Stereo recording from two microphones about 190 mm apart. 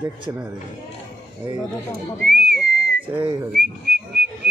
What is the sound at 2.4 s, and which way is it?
Whistling, 60° right (ahead or behind).